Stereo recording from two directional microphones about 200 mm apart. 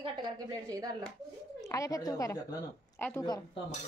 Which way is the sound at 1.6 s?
15° left (ahead or behind).